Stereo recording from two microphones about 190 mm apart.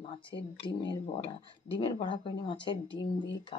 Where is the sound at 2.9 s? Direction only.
70° left (ahead or behind).